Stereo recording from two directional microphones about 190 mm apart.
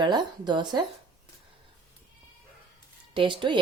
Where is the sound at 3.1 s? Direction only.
25° right (ahead or behind).